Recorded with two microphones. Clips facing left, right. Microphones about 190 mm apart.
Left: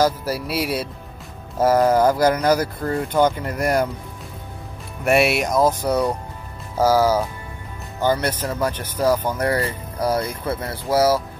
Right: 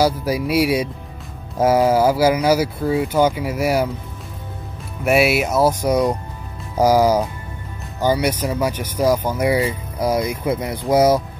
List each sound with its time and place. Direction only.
0.0 s speech: 10° right (ahead or behind)
5.0 s speech: centre (ahead or behind); by 11.2 s 20° right (ahead or behind)